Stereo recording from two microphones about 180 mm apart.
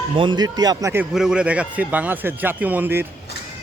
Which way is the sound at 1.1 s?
5° right (ahead or behind).